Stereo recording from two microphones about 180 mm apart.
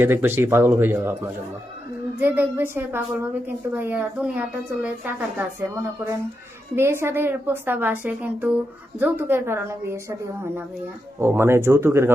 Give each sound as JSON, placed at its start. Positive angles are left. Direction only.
{"t": 0.0, "sound": "a woman's voice", "side_deg": -10}
{"t": 2.1, "sound": "a woman's voice", "side_deg": -10}
{"t": 6.7, "sound": "a woman's voice", "side_deg": -15}
{"t": 11.2, "sound": "a woman's voice", "side_deg": -15}